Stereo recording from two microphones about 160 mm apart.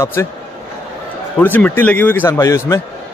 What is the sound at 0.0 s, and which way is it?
Speech, 15° left (ahead or behind).